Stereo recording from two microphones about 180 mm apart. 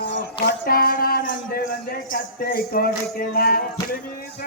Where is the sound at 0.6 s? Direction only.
55° left (ahead or behind).